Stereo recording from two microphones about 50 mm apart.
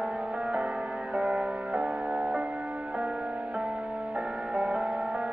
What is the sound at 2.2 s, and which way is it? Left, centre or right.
Music, right.